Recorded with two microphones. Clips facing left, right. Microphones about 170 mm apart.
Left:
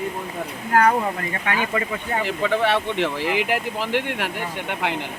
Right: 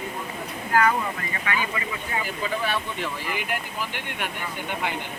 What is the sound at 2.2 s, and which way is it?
Speech, 80° left.